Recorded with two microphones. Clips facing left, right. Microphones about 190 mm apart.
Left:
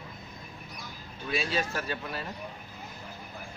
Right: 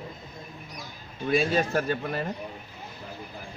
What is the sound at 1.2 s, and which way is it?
A man's voice, 50° right (ahead or behind).